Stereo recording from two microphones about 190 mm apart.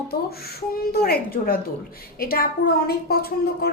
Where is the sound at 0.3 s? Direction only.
55° left (ahead or behind).